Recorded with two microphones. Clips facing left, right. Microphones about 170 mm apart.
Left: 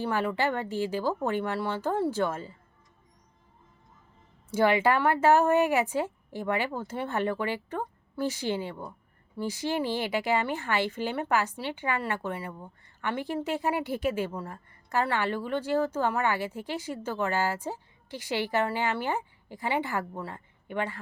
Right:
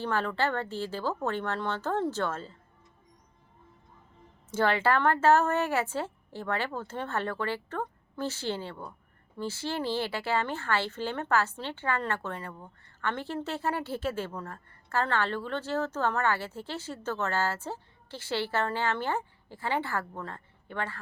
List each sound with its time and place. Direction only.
0.0 s speech: 15° left (ahead or behind)
4.5 s speech: 15° left (ahead or behind)